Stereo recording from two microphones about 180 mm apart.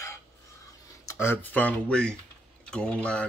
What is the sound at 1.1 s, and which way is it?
Speech, 15° left (ahead or behind).